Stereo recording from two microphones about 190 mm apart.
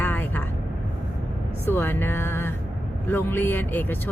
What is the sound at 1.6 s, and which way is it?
Speech, 10° left (ahead or behind).